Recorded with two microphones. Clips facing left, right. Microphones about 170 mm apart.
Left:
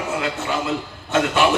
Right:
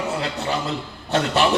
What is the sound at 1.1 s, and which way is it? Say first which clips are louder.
Speech: left 1 dB; 35° right (ahead or behind).